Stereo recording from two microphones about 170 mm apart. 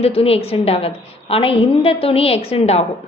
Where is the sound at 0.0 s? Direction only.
35° left (ahead or behind).